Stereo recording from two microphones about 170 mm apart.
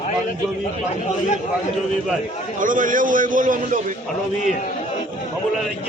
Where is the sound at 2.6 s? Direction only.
50° right (ahead or behind).